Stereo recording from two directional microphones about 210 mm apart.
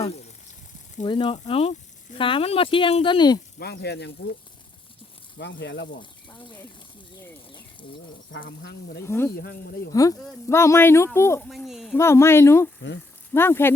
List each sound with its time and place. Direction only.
1.0 s speech: 20° left (ahead or behind)
3.6 s speech: 50° left (ahead or behind)
5.4 s speech: 55° left (ahead or behind)
8.3 s speech: 55° left (ahead or behind)
9.0 s speech: 10° left (ahead or behind)
9.4 s speech: 45° left (ahead or behind)
9.9 s speech: 15° left (ahead or behind)
11.4 s speech: centre (ahead or behind)
11.9 s speech: 15° left (ahead or behind)